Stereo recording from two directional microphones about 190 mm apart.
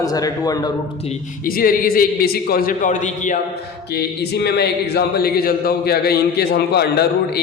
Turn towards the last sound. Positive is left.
turn(degrees=60)  # may be behind; listen again after turning